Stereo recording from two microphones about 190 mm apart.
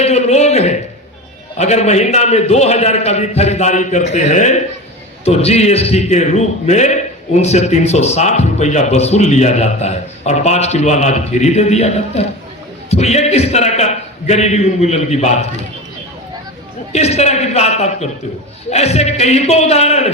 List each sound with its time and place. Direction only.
0.0 s a sound: 35° left (ahead or behind)
1.5 s a man's voice: 35° left (ahead or behind)
16.9 s a man's voice: 35° left (ahead or behind)